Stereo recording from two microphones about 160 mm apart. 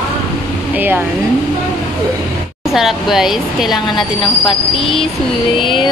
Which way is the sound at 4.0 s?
30° left (ahead or behind).